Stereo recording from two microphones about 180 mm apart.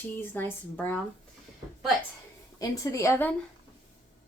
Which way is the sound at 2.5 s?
20° left (ahead or behind).